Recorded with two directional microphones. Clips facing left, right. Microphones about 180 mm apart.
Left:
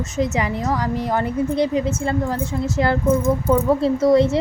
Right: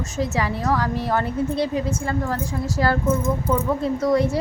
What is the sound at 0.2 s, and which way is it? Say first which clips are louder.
A woman's voice: left 2 dB; 20° left (ahead or behind).